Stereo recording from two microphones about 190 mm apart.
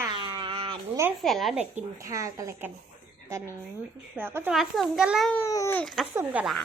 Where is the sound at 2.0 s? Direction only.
15° right (ahead or behind).